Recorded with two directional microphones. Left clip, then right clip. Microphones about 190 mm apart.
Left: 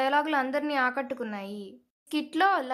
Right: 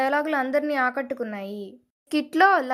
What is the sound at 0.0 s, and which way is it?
A woman's voice, 15° right (ahead or behind).